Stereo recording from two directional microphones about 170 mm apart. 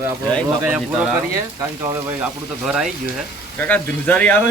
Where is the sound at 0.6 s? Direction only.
10° right (ahead or behind).